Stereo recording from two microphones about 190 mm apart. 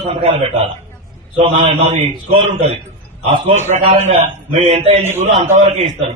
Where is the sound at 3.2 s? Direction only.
30° right (ahead or behind).